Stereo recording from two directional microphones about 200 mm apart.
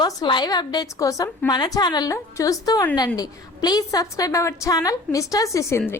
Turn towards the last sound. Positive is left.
turn(degrees=15)  # may be behind; listen again after turning